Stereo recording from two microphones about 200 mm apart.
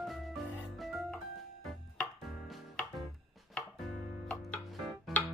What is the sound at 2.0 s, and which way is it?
Music, centre (ahead or behind).